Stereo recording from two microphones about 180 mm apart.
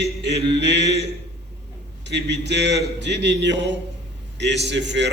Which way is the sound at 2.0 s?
75° right (ahead or behind).